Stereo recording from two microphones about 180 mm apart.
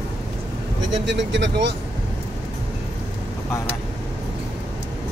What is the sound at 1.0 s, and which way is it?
Speech, 80° right.